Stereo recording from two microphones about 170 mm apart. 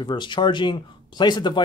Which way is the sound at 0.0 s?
25° left (ahead or behind).